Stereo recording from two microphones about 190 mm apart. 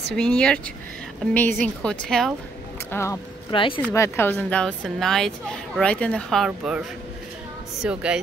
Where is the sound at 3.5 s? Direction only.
25° left (ahead or behind).